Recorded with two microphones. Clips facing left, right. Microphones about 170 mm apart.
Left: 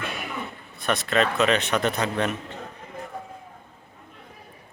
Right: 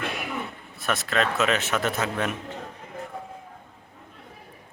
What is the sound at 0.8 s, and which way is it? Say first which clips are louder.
A man's voice: left 3 dB; centre (ahead or behind).